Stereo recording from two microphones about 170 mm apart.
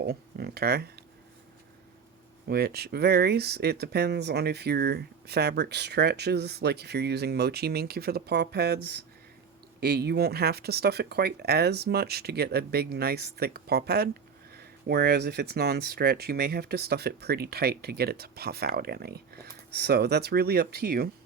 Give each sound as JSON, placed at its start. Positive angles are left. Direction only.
{"t": 0.0, "sound": "speech", "side_deg": -70}
{"t": 2.5, "sound": "speech", "side_deg": -65}